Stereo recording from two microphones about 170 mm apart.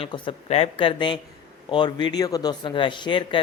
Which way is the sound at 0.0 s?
30° left (ahead or behind).